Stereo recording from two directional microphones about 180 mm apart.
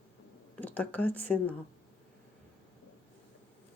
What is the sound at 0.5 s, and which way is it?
Speech, 10° left (ahead or behind).